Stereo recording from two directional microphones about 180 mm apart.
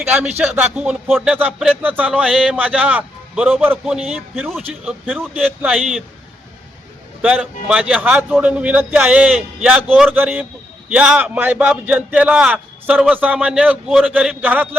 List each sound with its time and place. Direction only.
0.1 s speech: 10° right (ahead or behind)
7.2 s speech: 5° right (ahead or behind)